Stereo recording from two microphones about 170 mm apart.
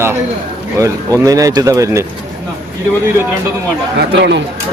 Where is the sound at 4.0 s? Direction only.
80° right.